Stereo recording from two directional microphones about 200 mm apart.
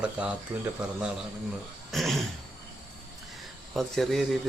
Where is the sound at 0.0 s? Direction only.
5° right (ahead or behind).